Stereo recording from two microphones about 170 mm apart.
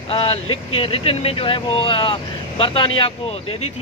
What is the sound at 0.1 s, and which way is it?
Speech, 30° left (ahead or behind).